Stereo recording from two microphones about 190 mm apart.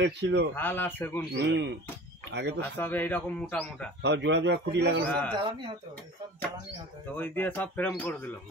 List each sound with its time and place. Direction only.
0.0 s a man's voice: 65° right (ahead or behind)
0.6 s speech: 10° left (ahead or behind)
1.3 s a man's voice: 65° right (ahead or behind)
2.6 s speech: 10° left (ahead or behind)
4.0 s a man's voice: 65° right (ahead or behind)
5.0 s speech: 10° left (ahead or behind)
7.2 s speech: 10° left (ahead or behind)